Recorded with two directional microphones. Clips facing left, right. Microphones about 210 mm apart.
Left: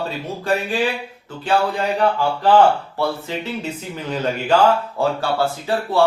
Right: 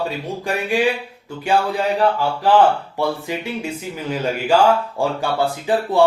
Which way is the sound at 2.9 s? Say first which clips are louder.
Right 1 dB; 15° right (ahead or behind).